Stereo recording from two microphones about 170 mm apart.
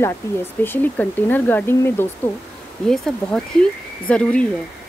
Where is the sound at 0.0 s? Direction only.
15° left (ahead or behind).